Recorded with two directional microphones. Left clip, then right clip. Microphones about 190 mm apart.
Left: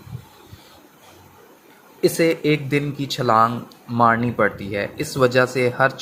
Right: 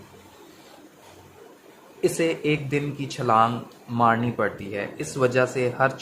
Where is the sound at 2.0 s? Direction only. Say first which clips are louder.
Left 5 dB; 15° left (ahead or behind).